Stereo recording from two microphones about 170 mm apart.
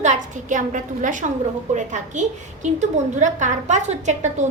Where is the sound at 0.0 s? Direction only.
45° right (ahead or behind).